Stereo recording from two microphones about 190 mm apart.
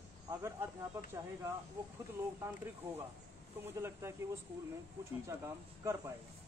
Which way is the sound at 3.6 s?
15° right (ahead or behind).